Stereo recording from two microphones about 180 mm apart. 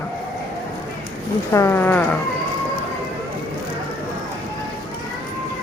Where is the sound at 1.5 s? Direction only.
15° left (ahead or behind).